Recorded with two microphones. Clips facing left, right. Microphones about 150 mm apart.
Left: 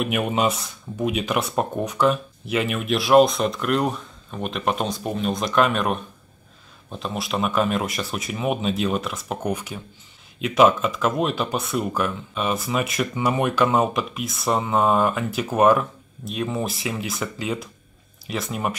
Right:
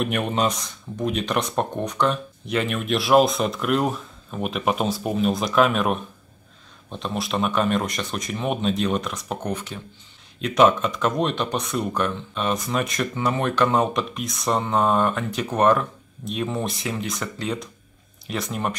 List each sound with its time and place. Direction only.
0.0 s speech: 5° left (ahead or behind)